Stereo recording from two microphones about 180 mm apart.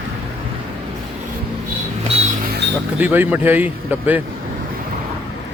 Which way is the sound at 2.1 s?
35° right (ahead or behind).